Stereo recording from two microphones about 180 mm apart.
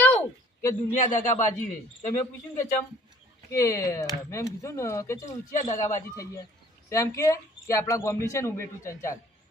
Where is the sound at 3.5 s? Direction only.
15° left (ahead or behind).